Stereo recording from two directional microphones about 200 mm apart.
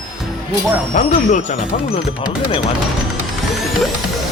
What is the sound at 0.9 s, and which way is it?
Speech, 35° left (ahead or behind).